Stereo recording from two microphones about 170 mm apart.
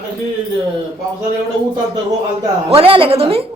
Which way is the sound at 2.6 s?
35° right (ahead or behind).